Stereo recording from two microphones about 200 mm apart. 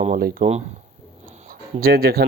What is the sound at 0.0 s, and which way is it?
Speech, 40° right (ahead or behind).